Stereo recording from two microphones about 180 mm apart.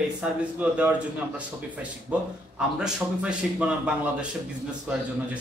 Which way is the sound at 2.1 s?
5° right (ahead or behind).